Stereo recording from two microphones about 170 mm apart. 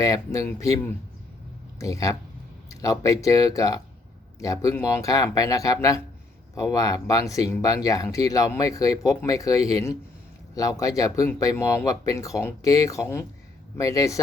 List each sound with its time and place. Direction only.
0.0 s speech: 20° left (ahead or behind)